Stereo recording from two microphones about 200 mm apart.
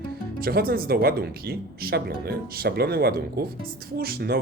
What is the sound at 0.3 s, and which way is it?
Speech, 50° right (ahead or behind).